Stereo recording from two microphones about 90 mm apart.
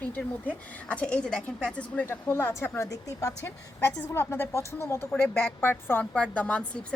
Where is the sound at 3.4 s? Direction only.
25° left (ahead or behind).